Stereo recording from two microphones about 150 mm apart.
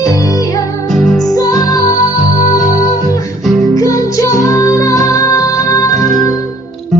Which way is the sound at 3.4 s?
Centre (ahead or behind).